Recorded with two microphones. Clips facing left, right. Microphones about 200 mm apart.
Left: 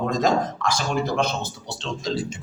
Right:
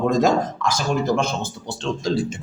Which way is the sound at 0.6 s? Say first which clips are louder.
Right 3 dB; 45° right (ahead or behind).